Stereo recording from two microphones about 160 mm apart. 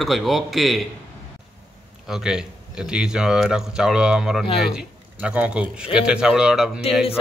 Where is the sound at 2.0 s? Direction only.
5° right (ahead or behind).